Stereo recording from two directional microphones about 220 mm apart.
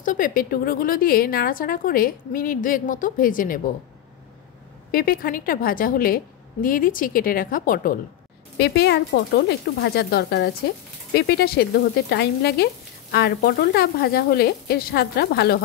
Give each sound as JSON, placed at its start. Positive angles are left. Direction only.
{"t": 0.0, "sound": "a woman's voice", "side_deg": 40}
{"t": 4.9, "sound": "a woman's voice", "side_deg": 40}